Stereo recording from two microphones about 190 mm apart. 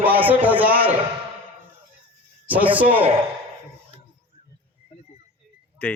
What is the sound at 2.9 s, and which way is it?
Speech, 30° right (ahead or behind).